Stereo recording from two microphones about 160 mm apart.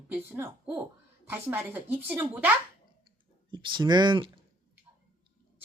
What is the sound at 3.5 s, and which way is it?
Speech, 30° right (ahead or behind).